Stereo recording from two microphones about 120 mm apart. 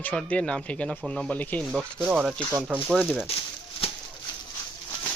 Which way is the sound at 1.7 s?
5° right (ahead or behind).